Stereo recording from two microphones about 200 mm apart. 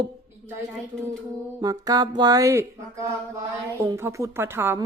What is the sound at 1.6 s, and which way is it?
Mantra, 20° right (ahead or behind).